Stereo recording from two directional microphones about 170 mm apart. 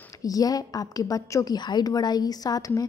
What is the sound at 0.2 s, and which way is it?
A woman's voice, 20° left (ahead or behind).